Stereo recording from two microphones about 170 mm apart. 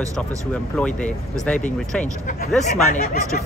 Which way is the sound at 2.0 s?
50° left (ahead or behind).